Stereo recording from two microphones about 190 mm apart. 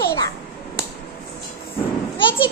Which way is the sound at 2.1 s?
25° left (ahead or behind).